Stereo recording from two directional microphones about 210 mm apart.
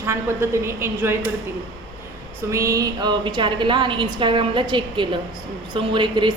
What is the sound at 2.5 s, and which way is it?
A woman's voice, 15° right (ahead or behind).